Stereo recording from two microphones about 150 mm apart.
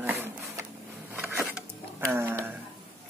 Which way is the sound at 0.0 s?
15° right (ahead or behind).